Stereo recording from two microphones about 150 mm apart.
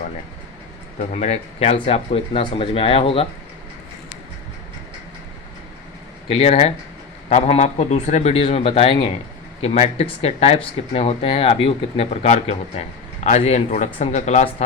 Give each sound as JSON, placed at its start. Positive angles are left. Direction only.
{"t": 1.1, "sound": "speech", "side_deg": 50}
{"t": 6.3, "sound": "speech", "side_deg": 45}